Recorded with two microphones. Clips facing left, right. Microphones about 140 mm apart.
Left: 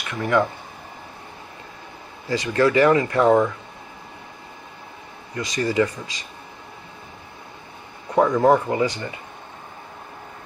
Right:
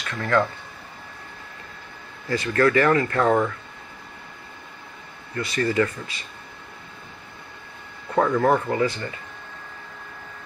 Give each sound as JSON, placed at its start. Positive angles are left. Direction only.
{"t": 0.1, "sound": "speech", "side_deg": 15}
{"t": 2.2, "sound": "speech", "side_deg": 15}
{"t": 5.3, "sound": "speech", "side_deg": 15}
{"t": 8.1, "sound": "speech", "side_deg": 15}